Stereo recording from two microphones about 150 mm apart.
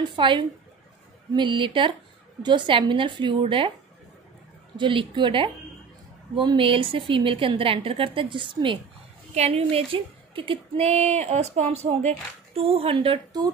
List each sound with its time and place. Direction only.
0.1 s a woman's voice: 30° right (ahead or behind)
4.7 s a woman's voice: 35° right (ahead or behind)
9.3 s a woman's voice: 45° right (ahead or behind)